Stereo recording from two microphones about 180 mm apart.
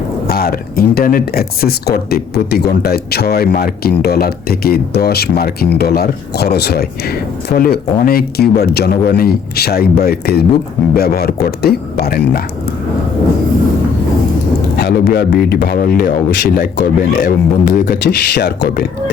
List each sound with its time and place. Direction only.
0.3 s speech: 55° left (ahead or behind)
14.8 s speech: 60° left (ahead or behind)